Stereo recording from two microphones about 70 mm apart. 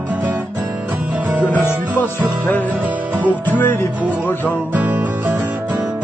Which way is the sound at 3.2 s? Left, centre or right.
Right.